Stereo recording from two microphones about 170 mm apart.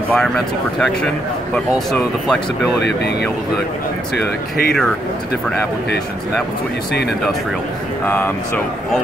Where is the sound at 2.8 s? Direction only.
80° left.